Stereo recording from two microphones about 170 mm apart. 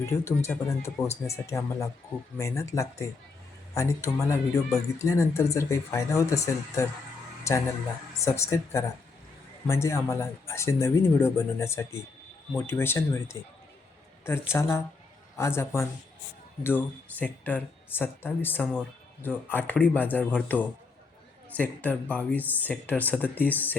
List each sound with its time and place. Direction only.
0.0 s speech: 15° left (ahead or behind)
14.5 s speech: 15° left (ahead or behind)